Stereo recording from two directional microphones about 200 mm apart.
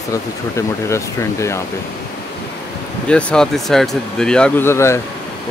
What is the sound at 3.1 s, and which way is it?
Speech, 5° left (ahead or behind).